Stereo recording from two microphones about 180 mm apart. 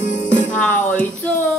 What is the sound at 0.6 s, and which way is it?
Music, 5° left (ahead or behind).